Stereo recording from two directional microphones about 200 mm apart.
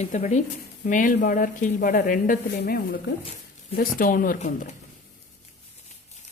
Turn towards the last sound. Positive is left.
turn(degrees=40)  # may be behind; listen again after turning